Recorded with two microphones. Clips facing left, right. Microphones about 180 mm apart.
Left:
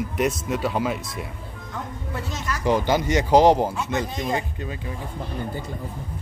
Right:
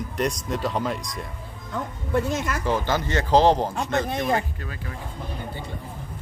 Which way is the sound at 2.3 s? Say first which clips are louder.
Right 3 dB; 55° right (ahead or behind).